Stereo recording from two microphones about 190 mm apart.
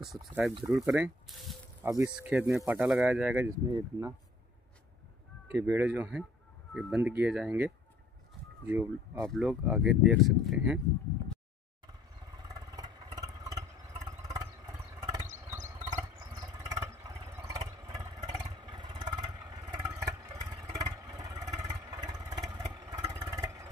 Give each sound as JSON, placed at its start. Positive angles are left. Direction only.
{"t": 0.0, "sound": "speech", "side_deg": 0}
{"t": 5.5, "sound": "speech", "side_deg": -15}
{"t": 9.2, "sound": "speech", "side_deg": 0}
{"t": 12.4, "sound": "vehicle", "side_deg": -20}